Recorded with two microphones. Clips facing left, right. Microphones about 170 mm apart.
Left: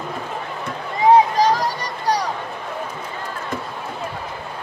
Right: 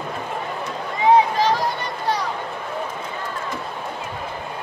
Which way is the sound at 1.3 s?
40° left (ahead or behind).